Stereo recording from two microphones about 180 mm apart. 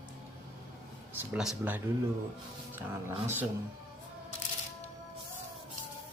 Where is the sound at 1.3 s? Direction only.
5° right (ahead or behind).